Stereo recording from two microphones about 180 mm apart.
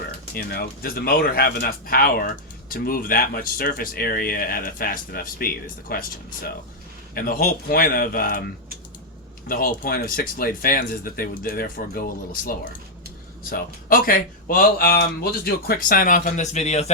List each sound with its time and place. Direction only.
0.3 s a man's voice: 60° left (ahead or behind); by 16.9 s 40° left (ahead or behind)